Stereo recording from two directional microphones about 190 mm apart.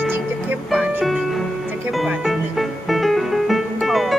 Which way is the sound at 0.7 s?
5° right (ahead or behind).